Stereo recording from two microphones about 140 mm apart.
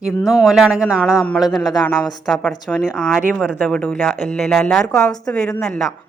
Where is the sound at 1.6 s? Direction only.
30° left (ahead or behind).